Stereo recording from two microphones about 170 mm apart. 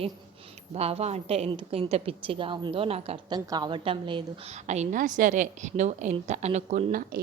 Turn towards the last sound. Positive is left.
turn(degrees=-55)  # may be behind; listen again after turning